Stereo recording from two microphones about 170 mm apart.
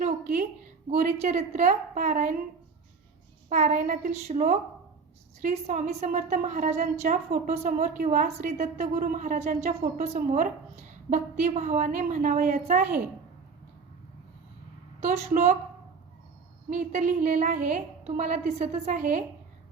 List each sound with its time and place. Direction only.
0.0 s a sound: 50° right (ahead or behind)
0.9 s a woman's voice: 40° right (ahead or behind)
3.5 s a woman's voice: 45° right (ahead or behind)
15.0 s a woman's voice: 40° right (ahead or behind)
16.6 s a woman's voice: 45° right (ahead or behind)